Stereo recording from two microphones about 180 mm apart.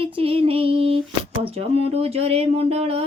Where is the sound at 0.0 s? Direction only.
30° right (ahead or behind).